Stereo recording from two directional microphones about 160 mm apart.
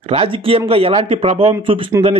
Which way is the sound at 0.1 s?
35° right (ahead or behind).